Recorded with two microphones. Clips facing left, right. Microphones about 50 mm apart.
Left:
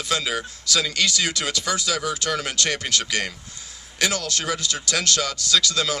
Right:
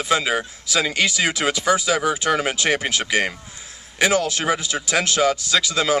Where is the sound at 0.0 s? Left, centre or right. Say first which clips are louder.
Right 5 dB; right.